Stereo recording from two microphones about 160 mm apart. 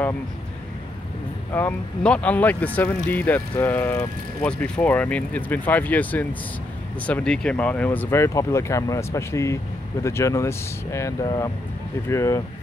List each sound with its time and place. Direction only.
1.5 s speech: 10° left (ahead or behind)